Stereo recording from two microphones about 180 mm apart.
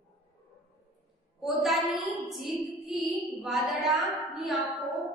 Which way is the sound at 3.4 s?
Centre (ahead or behind).